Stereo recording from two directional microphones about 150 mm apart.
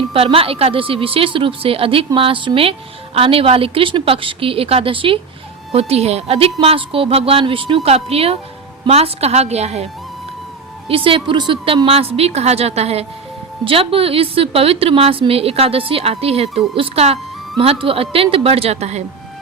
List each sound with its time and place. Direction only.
0.1 s a woman's voice: 40° right (ahead or behind)